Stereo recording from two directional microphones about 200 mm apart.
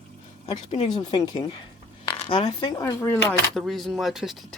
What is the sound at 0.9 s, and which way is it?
Speech, 20° left (ahead or behind).